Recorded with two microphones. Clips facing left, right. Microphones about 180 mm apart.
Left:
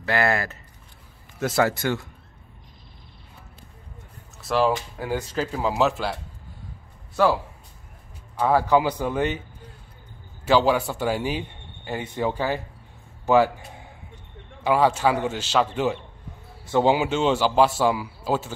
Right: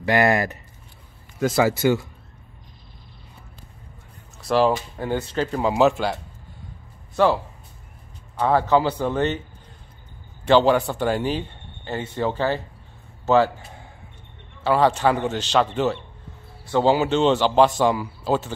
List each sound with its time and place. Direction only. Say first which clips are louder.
0.0 s speech: right 4 dB; 15° right (ahead or behind)
1.4 s speech: right 3 dB; centre (ahead or behind)
4.4 s speech: right 3 dB; centre (ahead or behind)
8.4 s speech: right 1 dB; 10° left (ahead or behind)
10.4 s a man's voice: right 3 dB; 5° left (ahead or behind)
14.6 s speech: right 1 dB; 10° left (ahead or behind)